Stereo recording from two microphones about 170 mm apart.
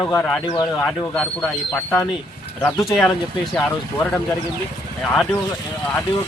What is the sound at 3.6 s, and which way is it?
Speech, 10° left (ahead or behind).